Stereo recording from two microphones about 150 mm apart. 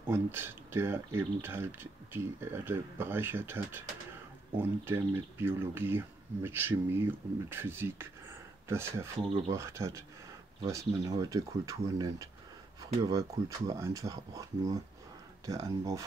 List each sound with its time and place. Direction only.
0.1 s speech: 15° right (ahead or behind)